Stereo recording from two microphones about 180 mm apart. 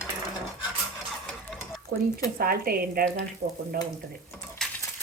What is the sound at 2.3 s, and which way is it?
Speech, 55° right (ahead or behind).